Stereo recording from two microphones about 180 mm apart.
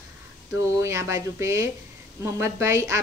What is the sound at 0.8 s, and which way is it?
A woman's voice, 15° right (ahead or behind).